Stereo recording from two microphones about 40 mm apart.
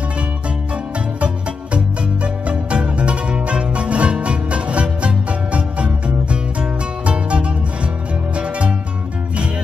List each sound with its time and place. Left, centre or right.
2.2 s music: right